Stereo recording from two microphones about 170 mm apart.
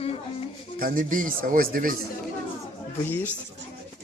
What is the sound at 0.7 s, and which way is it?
Speech, 55° right (ahead or behind).